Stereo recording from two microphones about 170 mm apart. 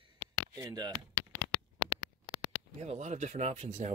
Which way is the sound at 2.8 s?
40° right (ahead or behind).